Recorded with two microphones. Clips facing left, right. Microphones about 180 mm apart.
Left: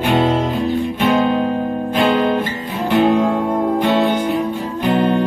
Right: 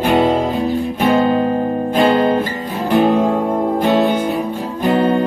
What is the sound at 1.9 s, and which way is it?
Guitar, 40° right (ahead or behind).